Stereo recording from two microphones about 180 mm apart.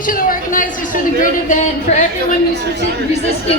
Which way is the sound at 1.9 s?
40° left (ahead or behind).